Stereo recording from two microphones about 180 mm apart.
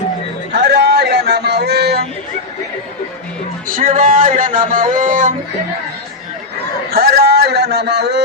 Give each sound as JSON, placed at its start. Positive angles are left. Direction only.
{"t": 0.5, "sound": "a sound", "side_deg": -70}
{"t": 3.7, "sound": "speech", "side_deg": -50}
{"t": 6.9, "sound": "speech", "side_deg": -60}